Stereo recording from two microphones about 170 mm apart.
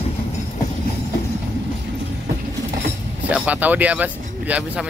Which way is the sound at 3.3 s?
10° right (ahead or behind).